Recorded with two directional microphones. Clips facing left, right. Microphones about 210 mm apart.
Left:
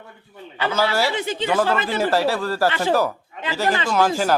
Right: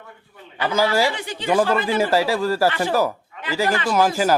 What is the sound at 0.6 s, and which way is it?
Speech, 10° right (ahead or behind).